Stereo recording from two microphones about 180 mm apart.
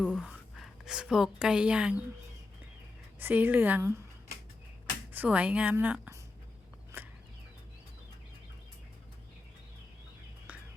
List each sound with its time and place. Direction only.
0.0 s a woman's voice: 5° right (ahead or behind)
3.2 s a woman's voice: 10° right (ahead or behind)
5.1 s a woman's voice: 10° right (ahead or behind)
6.9 s chicken: 15° right (ahead or behind)